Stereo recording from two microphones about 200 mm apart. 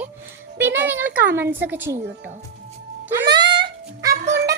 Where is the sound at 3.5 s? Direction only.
60° right (ahead or behind).